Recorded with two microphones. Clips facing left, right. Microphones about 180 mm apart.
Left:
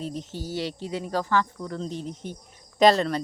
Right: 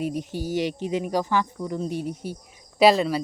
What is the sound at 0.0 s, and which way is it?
Speech, 15° right (ahead or behind).